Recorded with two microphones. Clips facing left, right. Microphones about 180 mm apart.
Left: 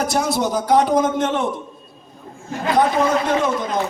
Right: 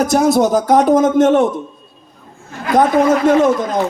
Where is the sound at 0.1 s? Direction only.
45° right (ahead or behind).